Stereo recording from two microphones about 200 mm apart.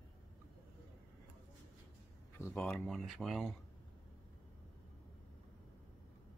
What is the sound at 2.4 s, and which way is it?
Speech, 5° left (ahead or behind).